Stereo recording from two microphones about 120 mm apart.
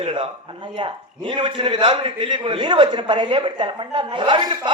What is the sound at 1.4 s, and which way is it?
A man's voice, 45° right (ahead or behind).